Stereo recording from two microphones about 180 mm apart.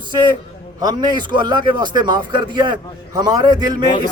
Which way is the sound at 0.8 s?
25° right (ahead or behind).